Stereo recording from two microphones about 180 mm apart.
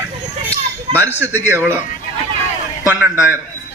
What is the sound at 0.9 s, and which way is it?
Speech, 15° right (ahead or behind).